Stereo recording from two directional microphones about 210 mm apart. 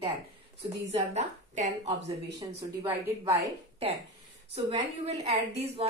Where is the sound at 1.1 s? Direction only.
35° right (ahead or behind).